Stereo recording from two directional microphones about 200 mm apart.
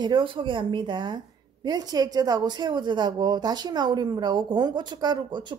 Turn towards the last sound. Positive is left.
turn(degrees=-20)  # may be behind; listen again after turning